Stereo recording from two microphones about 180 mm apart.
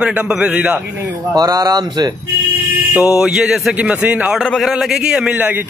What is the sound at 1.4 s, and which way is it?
Speech, 20° right (ahead or behind).